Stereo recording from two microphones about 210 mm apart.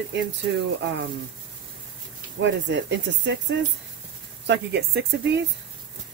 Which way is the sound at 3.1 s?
60° right (ahead or behind).